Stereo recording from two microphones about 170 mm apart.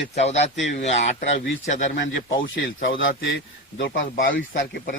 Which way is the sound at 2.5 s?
90° left.